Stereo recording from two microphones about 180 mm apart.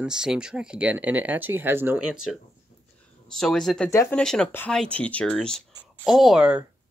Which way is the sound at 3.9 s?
15° left (ahead or behind).